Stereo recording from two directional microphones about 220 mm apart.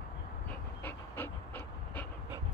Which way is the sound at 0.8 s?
10° left (ahead or behind).